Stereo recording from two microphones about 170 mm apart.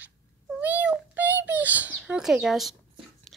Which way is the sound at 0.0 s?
10° right (ahead or behind).